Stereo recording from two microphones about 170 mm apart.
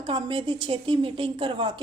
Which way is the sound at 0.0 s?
30° right (ahead or behind).